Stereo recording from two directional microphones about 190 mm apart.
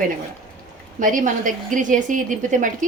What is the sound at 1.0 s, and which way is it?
A woman's voice, 45° right (ahead or behind).